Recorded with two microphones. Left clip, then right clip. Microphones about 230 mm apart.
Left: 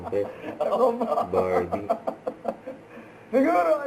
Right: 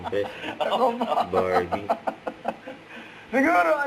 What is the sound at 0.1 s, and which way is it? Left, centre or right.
A man's voice, centre.